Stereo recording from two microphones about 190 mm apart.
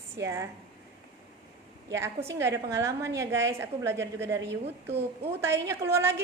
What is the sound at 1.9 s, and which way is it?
A woman's voice, 15° right (ahead or behind).